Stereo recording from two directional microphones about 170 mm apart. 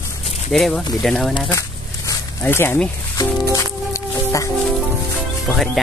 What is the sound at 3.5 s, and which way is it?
Music, 20° left (ahead or behind).